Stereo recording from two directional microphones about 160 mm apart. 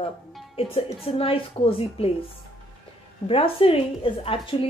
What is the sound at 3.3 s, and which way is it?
Speech, 35° left (ahead or behind).